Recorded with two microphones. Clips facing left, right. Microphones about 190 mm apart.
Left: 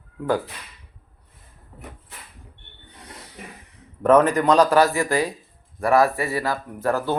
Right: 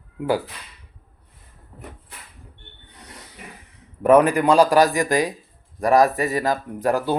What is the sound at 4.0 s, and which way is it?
Speech, 10° right (ahead or behind).